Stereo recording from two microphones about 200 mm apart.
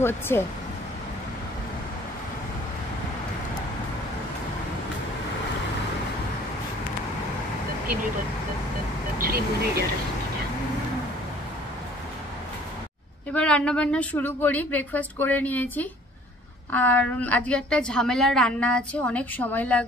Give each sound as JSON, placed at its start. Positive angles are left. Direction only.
{"t": 0.3, "sound": "a woman's voice", "side_deg": 15}
{"t": 9.2, "sound": "speech", "side_deg": -50}
{"t": 13.3, "sound": "a woman's voice", "side_deg": 5}